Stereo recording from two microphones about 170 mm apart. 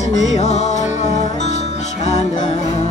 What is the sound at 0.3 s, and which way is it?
Music, 40° left (ahead or behind).